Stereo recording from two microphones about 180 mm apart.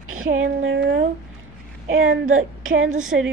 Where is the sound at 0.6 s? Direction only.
65° right (ahead or behind).